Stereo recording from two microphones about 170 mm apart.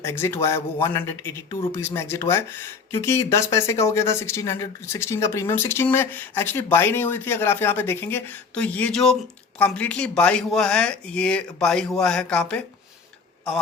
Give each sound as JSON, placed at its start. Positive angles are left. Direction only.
{"t": 0.0, "sound": "a man's voice", "side_deg": 15}